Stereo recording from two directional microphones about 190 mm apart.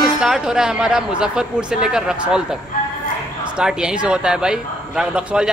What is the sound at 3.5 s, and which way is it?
A man's voice, 5° right (ahead or behind).